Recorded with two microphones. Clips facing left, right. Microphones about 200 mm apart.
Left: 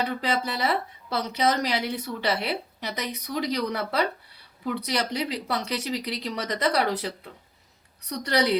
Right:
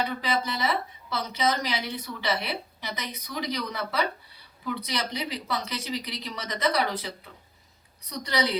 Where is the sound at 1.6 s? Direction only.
70° left (ahead or behind).